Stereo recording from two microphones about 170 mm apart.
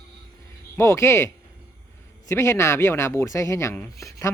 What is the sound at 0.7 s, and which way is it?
Speech, 15° left (ahead or behind).